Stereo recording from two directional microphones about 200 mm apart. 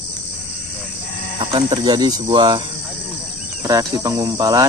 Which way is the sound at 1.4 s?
25° right (ahead or behind).